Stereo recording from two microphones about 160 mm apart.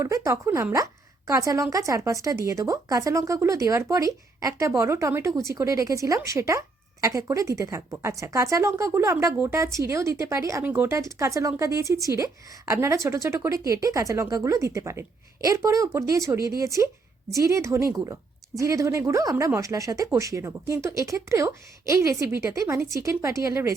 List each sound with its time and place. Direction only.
0.0 s a woman's voice: 20° right (ahead or behind)